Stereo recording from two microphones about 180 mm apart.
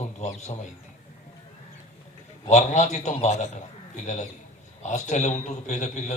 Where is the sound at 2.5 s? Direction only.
40° left (ahead or behind).